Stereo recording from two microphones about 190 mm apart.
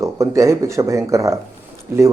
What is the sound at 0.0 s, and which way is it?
A man's voice, 15° right (ahead or behind).